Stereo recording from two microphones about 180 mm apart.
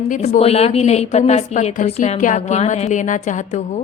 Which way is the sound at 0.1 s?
35° left (ahead or behind).